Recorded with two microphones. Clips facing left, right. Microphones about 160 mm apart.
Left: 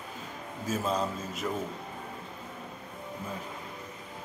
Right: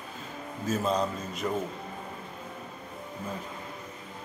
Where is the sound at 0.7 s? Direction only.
5° left (ahead or behind).